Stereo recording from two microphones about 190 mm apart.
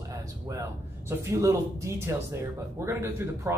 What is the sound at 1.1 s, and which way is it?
A man's voice, 15° right (ahead or behind).